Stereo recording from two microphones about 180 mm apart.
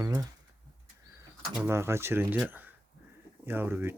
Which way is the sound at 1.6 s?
15° right (ahead or behind).